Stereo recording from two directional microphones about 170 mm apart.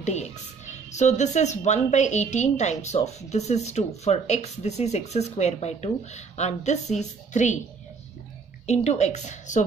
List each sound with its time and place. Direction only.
0.0 s speech: 40° left (ahead or behind)
8.6 s speech: 40° left (ahead or behind)